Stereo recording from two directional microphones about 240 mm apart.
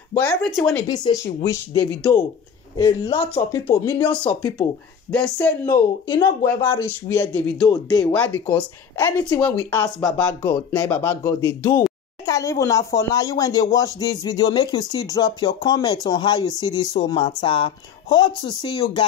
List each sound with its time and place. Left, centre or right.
0.1 s speech: centre
0.8 s speech: centre
3.2 s speech: centre